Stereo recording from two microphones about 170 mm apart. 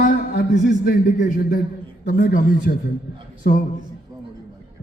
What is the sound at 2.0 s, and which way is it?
Speech, 55° left (ahead or behind).